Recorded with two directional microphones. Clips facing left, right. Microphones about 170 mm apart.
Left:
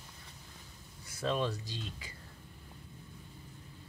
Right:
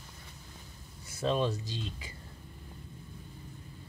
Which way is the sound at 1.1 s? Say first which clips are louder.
Right 3 dB; 25° right (ahead or behind).